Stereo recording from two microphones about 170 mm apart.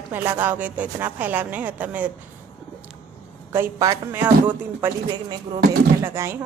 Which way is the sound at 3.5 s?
15° right (ahead or behind).